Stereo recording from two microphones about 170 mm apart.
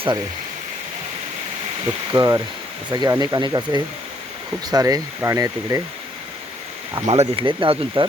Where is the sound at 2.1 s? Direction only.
20° right (ahead or behind).